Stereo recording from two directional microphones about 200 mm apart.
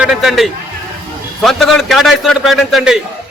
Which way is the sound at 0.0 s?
5° right (ahead or behind).